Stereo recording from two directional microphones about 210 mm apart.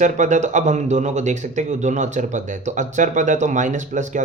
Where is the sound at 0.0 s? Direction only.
35° right (ahead or behind).